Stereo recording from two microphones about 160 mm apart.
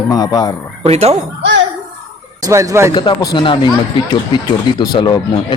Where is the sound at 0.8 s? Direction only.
40° right (ahead or behind).